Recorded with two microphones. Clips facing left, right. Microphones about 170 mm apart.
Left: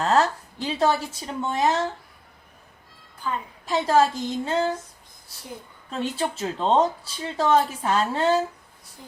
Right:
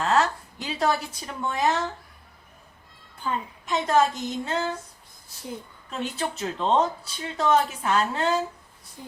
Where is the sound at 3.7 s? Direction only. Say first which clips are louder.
Left 2 dB; 30° left (ahead or behind).